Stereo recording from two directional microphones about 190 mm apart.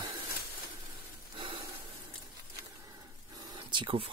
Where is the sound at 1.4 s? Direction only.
30° right (ahead or behind).